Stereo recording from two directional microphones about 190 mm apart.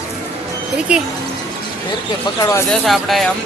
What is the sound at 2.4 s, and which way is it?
Speech, 15° left (ahead or behind).